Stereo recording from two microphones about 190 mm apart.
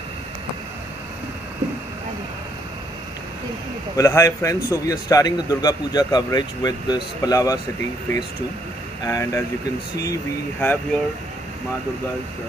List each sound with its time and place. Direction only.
3.9 s a man's voice: 15° left (ahead or behind)
9.0 s speech: 15° left (ahead or behind)
10.6 s speech: 10° left (ahead or behind)